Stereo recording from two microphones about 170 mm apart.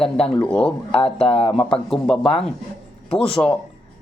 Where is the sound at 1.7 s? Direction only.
5° left (ahead or behind).